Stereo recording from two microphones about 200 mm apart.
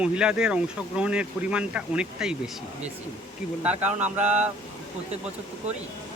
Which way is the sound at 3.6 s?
10° right (ahead or behind).